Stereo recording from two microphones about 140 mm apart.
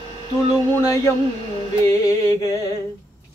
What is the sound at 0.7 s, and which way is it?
Mantra, 25° left (ahead or behind).